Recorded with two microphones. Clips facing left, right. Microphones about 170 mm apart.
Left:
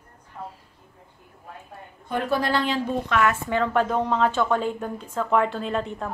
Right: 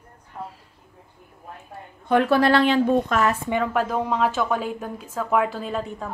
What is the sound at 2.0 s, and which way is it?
Speech, 75° right (ahead or behind).